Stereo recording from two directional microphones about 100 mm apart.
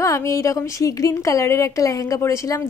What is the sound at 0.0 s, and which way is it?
A woman's voice, 30° left (ahead or behind).